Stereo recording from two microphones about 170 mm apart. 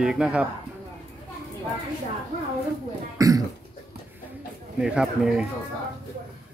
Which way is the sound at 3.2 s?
20° right (ahead or behind).